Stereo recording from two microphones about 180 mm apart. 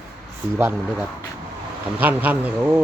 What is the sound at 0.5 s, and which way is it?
Speech, 10° right (ahead or behind).